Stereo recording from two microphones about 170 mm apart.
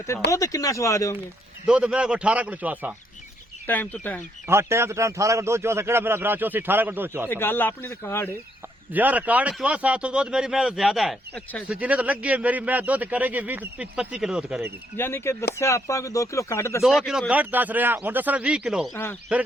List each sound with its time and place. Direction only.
0.3 s speech: 20° left (ahead or behind)
1.6 s a man's voice: 5° right (ahead or behind)
3.7 s speech: 10° left (ahead or behind)
4.4 s a man's voice: 15° right (ahead or behind)
7.3 s speech: 10° left (ahead or behind)
8.9 s a man's voice: 10° right (ahead or behind)
14.9 s speech: 15° left (ahead or behind)
16.8 s a man's voice: centre (ahead or behind)